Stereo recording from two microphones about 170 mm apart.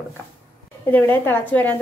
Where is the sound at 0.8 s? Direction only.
10° left (ahead or behind).